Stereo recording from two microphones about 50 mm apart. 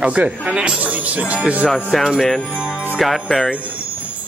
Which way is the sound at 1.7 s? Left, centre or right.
Centre.